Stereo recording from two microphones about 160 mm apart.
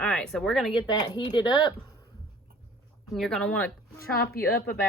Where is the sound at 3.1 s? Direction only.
5° left (ahead or behind).